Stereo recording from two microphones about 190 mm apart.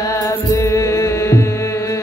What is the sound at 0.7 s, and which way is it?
Music, 15° left (ahead or behind).